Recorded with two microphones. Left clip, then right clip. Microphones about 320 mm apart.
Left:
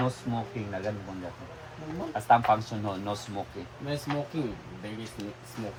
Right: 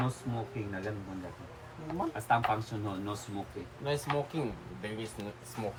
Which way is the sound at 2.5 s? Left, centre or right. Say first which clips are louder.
Left 8 dB; centre.